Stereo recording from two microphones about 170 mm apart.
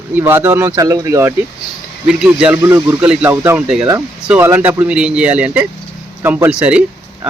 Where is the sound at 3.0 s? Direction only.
10° right (ahead or behind).